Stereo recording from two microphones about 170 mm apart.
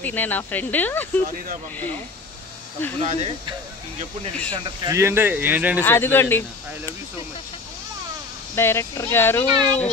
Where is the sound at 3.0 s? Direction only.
35° right (ahead or behind).